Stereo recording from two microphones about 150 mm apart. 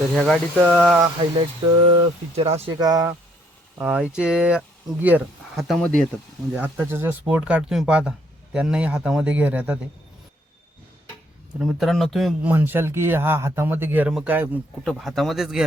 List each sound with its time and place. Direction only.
0.2 s speech: centre (ahead or behind)
1.4 s speech: 35° right (ahead or behind)
2.7 s speech: 25° right (ahead or behind)
3.8 s speech: 10° right (ahead or behind)
6.5 s speech: 15° right (ahead or behind)
11.6 s speech: centre (ahead or behind)
12.5 s speech: 15° right (ahead or behind)
14.8 s speech: centre (ahead or behind)